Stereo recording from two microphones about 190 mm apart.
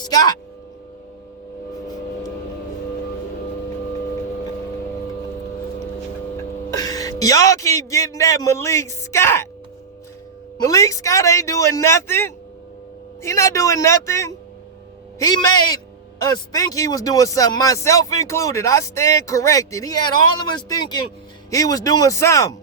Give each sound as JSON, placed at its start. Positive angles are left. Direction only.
{"t": 0.0, "sound": "speech", "side_deg": 20}
{"t": 6.3, "sound": "speech", "side_deg": 20}
{"t": 10.6, "sound": "speech", "side_deg": 20}